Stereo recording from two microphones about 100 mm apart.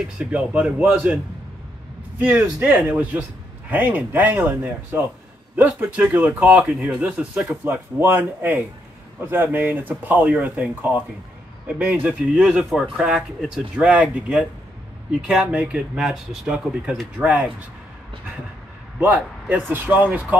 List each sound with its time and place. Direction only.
0.2 s a man's voice: 15° right (ahead or behind)
19.5 s speech: 15° right (ahead or behind)